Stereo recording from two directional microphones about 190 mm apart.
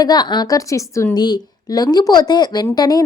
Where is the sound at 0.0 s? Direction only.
20° left (ahead or behind).